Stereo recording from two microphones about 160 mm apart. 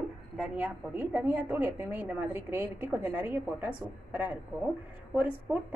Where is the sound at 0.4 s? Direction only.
10° right (ahead or behind).